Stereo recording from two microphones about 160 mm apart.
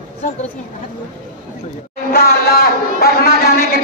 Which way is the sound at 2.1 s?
75° left (ahead or behind).